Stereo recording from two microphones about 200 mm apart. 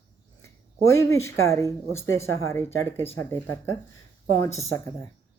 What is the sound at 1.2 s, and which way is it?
Speech, 15° left (ahead or behind).